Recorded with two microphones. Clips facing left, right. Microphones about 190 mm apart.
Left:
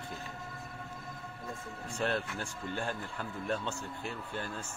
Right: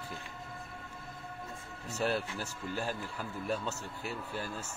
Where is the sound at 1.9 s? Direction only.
5° right (ahead or behind).